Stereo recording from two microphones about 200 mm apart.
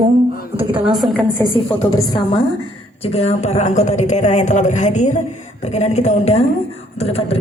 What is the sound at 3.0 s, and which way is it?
A woman's voice, 30° left (ahead or behind).